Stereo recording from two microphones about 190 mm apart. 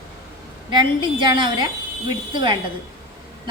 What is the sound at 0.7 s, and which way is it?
A woman's voice, 25° right (ahead or behind).